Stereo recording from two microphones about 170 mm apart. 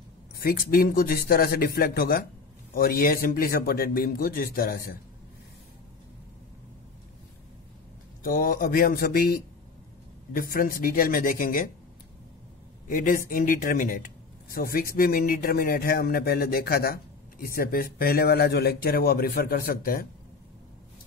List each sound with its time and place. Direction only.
0.4 s speech: 60° left (ahead or behind)
8.2 s speech: 55° left (ahead or behind)
12.8 s a woman's voice: 55° left (ahead or behind)